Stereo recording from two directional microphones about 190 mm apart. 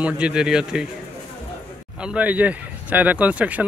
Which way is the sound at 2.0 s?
5° right (ahead or behind).